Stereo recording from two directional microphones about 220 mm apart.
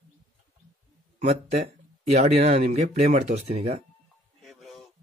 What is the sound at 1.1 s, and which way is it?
Speech, 30° right (ahead or behind).